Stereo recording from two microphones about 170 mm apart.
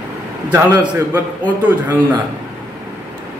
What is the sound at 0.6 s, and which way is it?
Speech, 25° right (ahead or behind).